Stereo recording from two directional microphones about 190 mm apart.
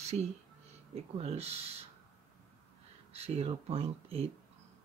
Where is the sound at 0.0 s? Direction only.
35° right (ahead or behind).